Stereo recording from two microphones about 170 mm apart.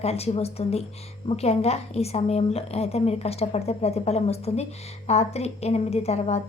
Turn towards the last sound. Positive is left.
turn(degrees=40)  # may be behind; listen again after turning